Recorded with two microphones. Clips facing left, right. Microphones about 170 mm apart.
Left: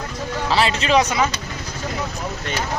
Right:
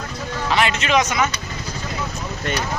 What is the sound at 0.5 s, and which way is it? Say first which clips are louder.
Speech: left 1 dB; 30° left (ahead or behind).